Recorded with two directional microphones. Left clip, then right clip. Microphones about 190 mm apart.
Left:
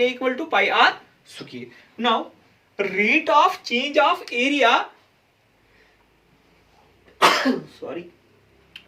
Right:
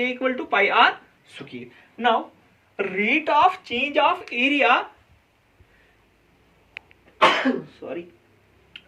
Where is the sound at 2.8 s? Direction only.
20° right (ahead or behind).